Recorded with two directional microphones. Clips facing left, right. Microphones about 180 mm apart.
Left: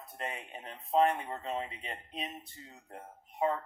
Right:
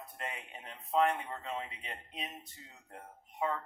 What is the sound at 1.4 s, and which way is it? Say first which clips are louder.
Speech: left 4 dB; 35° left (ahead or behind).